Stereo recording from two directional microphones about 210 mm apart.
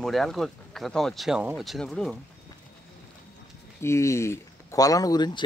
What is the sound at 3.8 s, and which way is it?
Speech, 15° left (ahead or behind).